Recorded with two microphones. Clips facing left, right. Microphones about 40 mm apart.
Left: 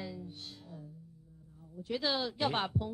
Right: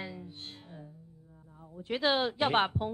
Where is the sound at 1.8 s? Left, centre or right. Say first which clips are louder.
Right 5 dB; right.